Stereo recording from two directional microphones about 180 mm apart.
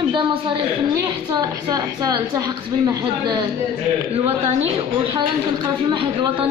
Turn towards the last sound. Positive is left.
turn(degrees=-25)  # may be behind; listen again after turning